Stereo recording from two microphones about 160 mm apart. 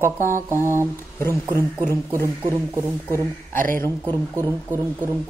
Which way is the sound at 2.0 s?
20° right (ahead or behind).